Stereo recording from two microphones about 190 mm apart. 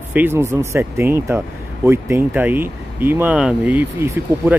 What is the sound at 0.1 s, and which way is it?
Speech, 10° right (ahead or behind).